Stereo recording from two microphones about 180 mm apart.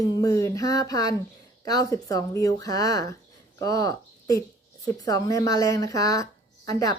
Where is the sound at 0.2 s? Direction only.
20° left (ahead or behind).